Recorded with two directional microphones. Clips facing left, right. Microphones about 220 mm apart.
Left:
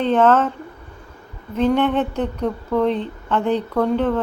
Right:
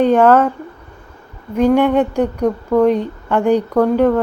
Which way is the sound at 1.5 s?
10° right (ahead or behind).